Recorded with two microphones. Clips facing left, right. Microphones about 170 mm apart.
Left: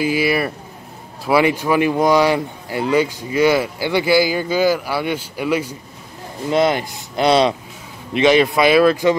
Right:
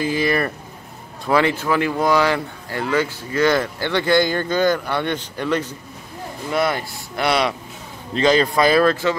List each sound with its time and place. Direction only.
0.0 s speech: 10° left (ahead or behind)
6.5 s speech: 20° left (ahead or behind)
8.1 s speech: 10° left (ahead or behind)